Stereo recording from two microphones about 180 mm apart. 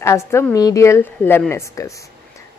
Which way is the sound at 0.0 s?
15° left (ahead or behind).